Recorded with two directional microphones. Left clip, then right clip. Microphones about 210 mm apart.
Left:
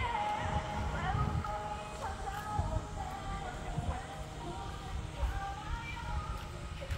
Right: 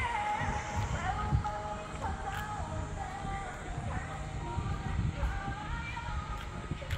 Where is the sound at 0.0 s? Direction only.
15° right (ahead or behind); by 1.2 s 45° right (ahead or behind).